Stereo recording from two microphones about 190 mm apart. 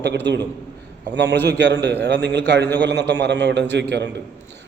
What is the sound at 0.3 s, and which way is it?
A man's voice, 65° right (ahead or behind).